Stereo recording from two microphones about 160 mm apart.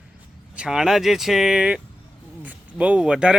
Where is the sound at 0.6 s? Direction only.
5° right (ahead or behind).